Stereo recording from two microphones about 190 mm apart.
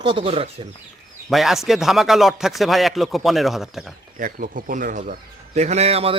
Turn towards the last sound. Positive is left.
turn(degrees=-30)  # may be behind; listen again after turning